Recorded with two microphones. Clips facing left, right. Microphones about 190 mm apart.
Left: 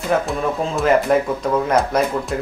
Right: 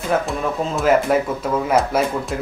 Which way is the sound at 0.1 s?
Centre (ahead or behind).